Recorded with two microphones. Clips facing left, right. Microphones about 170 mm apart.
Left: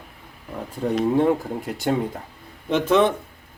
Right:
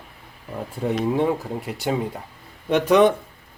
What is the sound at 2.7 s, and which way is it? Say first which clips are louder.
Speech: right 2 dB; 15° right (ahead or behind).